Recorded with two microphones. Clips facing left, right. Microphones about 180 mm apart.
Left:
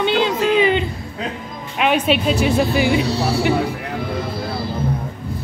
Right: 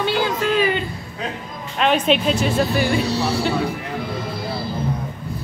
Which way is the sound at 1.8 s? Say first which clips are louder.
Even; 10° left (ahead or behind).